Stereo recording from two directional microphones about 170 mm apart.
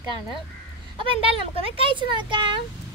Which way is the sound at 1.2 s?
30° right (ahead or behind).